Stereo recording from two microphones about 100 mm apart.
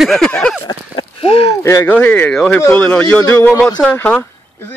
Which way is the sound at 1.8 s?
15° left (ahead or behind).